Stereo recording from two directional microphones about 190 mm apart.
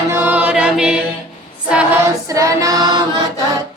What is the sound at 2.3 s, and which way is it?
Singing, 15° right (ahead or behind).